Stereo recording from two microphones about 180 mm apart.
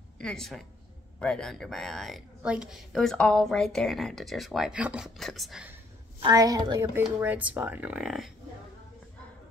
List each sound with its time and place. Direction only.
0.2 s speech: 5° left (ahead or behind)
6.2 s a woman's voice: 20° right (ahead or behind)
7.2 s speech: 10° right (ahead or behind)